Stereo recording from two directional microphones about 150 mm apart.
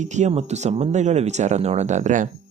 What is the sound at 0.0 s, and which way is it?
Speech, 50° right (ahead or behind).